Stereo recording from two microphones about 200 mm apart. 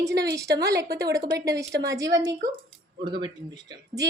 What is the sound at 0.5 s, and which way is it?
Speech, 15° right (ahead or behind).